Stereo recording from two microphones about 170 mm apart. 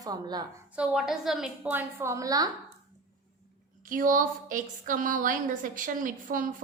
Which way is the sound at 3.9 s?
55° right (ahead or behind).